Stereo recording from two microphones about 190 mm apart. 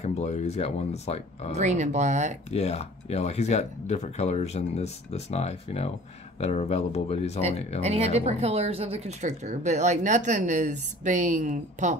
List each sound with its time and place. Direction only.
0.0 s speech: 35° left (ahead or behind)
1.5 s speech: 35° right (ahead or behind)
2.5 s speech: 35° left (ahead or behind)
7.8 s speech: 35° right (ahead or behind)